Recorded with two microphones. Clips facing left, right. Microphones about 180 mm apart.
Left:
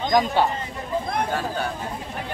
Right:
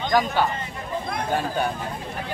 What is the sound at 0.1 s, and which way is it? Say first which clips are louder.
Speech: left 1 dB; 25° left (ahead or behind).